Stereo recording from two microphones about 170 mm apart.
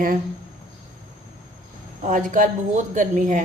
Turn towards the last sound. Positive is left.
turn(degrees=-50)  # may be behind; listen again after turning